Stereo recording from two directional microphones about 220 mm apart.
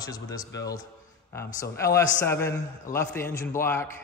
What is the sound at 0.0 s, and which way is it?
Speech, 15° left (ahead or behind).